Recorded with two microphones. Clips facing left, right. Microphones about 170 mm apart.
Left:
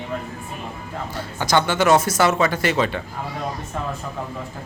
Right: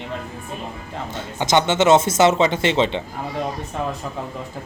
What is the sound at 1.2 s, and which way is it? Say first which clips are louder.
Speech: right 1 dB; 20° right (ahead or behind).